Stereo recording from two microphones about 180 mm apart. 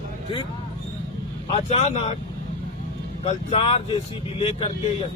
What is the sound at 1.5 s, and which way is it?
Speech, 35° left (ahead or behind).